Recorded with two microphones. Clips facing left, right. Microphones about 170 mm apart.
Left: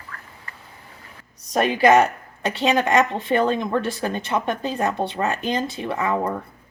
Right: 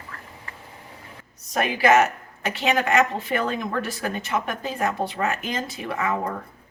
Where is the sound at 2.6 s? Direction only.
30° left (ahead or behind).